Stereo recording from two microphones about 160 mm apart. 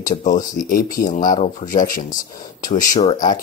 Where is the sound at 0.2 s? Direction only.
55° left (ahead or behind).